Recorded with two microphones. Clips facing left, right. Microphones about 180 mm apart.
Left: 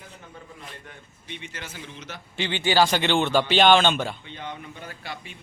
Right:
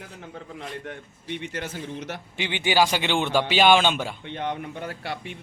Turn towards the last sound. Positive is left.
turn(degrees=-65)  # may be behind; listen again after turning